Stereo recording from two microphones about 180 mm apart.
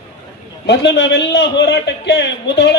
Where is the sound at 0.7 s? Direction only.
75° left (ahead or behind).